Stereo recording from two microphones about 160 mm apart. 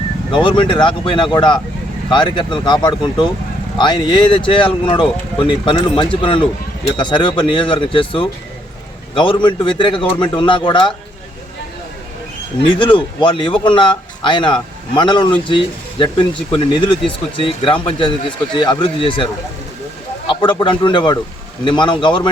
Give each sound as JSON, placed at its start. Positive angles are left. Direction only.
{"t": 0.3, "sound": "speech", "side_deg": 30}
{"t": 9.4, "sound": "speech", "side_deg": 30}
{"t": 12.6, "sound": "speech", "side_deg": 30}
{"t": 20.3, "sound": "speech", "side_deg": 30}